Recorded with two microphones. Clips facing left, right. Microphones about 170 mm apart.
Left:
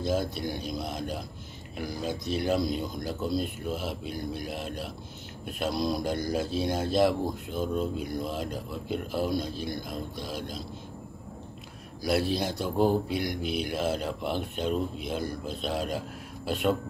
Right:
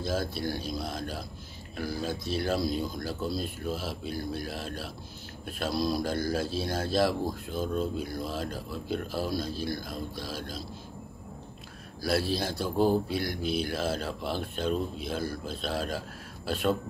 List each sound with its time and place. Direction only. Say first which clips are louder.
0.0 s speech: left 2 dB; 20° left (ahead or behind)
12.0 s speech: left 2 dB; 20° left (ahead or behind)